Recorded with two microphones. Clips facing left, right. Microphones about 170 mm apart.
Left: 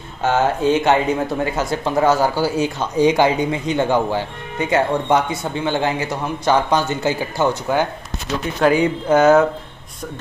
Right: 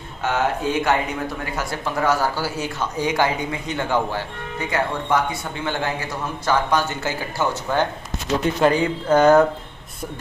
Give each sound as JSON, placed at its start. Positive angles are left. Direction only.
{"t": 0.2, "sound": "speech", "side_deg": 30}